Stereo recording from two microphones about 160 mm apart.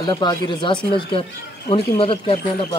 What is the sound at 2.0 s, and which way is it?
Speech, 35° left (ahead or behind).